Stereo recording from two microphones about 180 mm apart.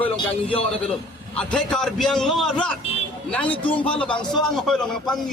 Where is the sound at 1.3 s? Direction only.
5° left (ahead or behind).